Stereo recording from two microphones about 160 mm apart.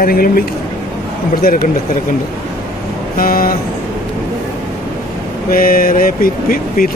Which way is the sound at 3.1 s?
60° left (ahead or behind).